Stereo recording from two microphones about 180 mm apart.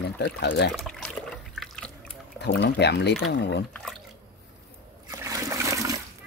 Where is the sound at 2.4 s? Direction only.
70° left (ahead or behind).